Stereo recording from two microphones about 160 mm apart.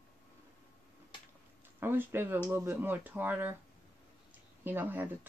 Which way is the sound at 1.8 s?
15° right (ahead or behind).